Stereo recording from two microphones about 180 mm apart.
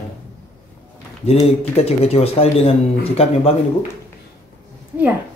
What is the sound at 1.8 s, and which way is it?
Speech, 35° left (ahead or behind).